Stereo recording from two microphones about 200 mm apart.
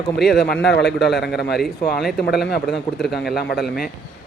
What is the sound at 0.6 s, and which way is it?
Speech, 55° left (ahead or behind).